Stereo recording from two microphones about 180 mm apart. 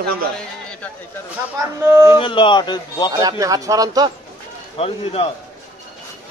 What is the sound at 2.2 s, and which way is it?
Speech, 25° left (ahead or behind).